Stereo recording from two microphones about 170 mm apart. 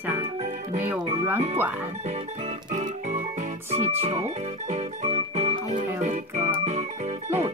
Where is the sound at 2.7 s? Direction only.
45° right (ahead or behind).